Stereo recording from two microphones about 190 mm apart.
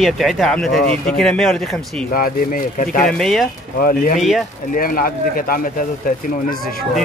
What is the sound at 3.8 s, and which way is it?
Speech, 45° left (ahead or behind).